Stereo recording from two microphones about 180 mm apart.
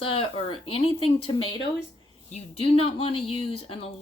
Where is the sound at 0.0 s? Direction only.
30° left (ahead or behind).